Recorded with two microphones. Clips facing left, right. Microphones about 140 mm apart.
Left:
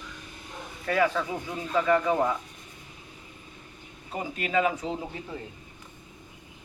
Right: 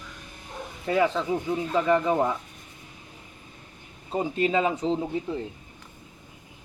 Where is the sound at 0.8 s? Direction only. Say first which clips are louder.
Right 2 dB; 20° right (ahead or behind).